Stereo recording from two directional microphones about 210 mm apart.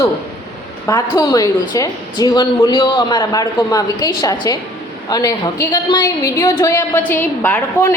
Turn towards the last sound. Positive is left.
turn(degrees=10)  # may be behind; listen again after turning